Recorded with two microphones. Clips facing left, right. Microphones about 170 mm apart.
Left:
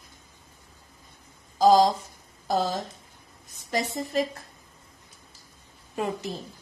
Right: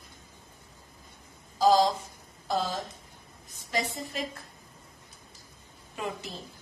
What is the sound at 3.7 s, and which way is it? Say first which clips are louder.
Speech: left 6 dB; 40° left (ahead or behind).